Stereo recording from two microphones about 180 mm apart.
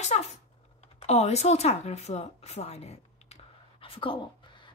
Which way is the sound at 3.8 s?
30° left (ahead or behind).